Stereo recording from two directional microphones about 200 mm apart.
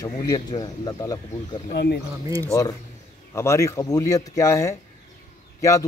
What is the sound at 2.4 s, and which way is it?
A man's voice, 15° left (ahead or behind).